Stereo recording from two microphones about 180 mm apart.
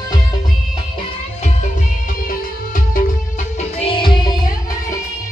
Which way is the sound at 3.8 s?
25° left (ahead or behind).